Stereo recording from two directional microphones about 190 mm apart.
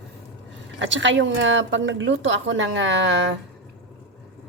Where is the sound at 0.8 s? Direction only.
75° right (ahead or behind).